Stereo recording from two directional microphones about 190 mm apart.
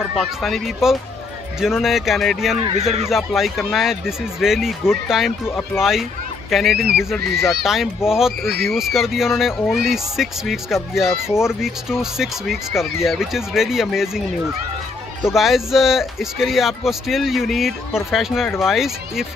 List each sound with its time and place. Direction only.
0.1 s speech: centre (ahead or behind)
2.8 s speech: 35° right (ahead or behind)
3.1 s speech: centre (ahead or behind)
15.2 s speech: centre (ahead or behind)